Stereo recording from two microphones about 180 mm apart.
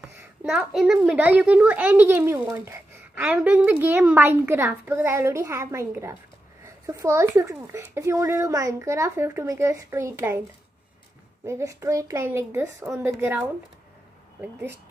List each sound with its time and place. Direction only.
0.0 s a woman's voice: 5° right (ahead or behind)
11.4 s a woman's voice: 15° right (ahead or behind)